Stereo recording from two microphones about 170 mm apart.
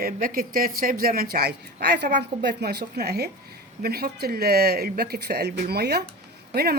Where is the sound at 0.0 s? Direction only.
55° right (ahead or behind).